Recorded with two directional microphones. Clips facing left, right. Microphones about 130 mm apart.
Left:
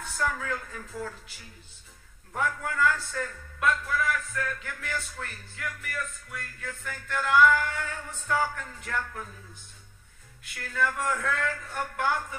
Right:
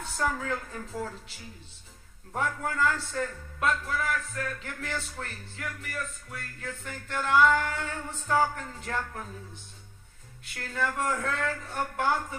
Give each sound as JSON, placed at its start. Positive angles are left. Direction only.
{"t": 0.2, "sound": "a man's voice", "side_deg": -35}
{"t": 2.3, "sound": "a man's voice", "side_deg": -35}
{"t": 10.6, "sound": "a man's voice", "side_deg": -30}